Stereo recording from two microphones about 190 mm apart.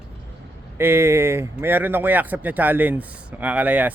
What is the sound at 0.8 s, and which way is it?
Speech, 15° right (ahead or behind).